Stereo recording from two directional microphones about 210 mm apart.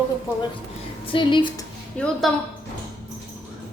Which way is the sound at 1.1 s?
25° left (ahead or behind).